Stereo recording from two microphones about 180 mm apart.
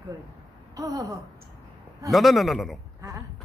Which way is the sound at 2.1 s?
Centre (ahead or behind).